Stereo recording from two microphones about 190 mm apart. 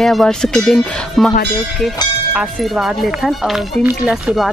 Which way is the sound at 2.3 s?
5° right (ahead or behind).